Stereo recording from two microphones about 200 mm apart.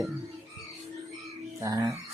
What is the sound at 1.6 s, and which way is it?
Speech, 15° right (ahead or behind).